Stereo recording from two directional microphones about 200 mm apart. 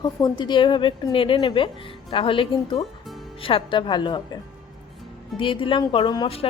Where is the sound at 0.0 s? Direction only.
20° left (ahead or behind).